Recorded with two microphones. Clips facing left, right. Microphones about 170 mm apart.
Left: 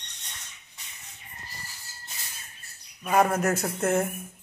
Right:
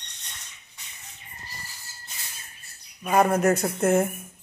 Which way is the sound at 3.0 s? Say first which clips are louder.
Right 3 dB; centre (ahead or behind).